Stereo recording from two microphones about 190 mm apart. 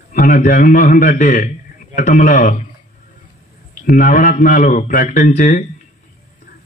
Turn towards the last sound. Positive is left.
turn(degrees=45)  # may be behind; listen again after turning